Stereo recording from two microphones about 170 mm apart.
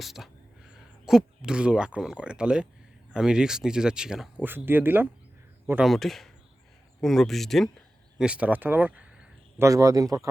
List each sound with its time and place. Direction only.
0.0 s speech: centre (ahead or behind)
5.8 s speech: centre (ahead or behind)
9.6 s speech: 20° right (ahead or behind)